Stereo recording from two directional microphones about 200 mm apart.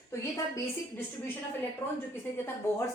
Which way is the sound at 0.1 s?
15° left (ahead or behind).